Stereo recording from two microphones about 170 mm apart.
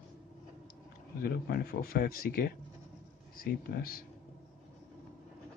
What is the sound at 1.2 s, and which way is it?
A man's voice, 65° left (ahead or behind).